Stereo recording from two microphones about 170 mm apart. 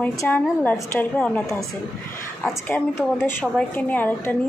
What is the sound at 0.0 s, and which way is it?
A woman's voice, 10° left (ahead or behind).